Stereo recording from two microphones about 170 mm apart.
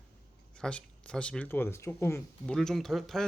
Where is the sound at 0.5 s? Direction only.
5° left (ahead or behind).